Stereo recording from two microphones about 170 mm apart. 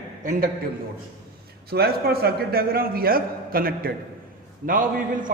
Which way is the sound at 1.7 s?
65° right (ahead or behind).